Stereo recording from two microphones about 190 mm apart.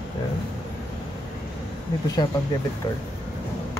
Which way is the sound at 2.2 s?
25° left (ahead or behind).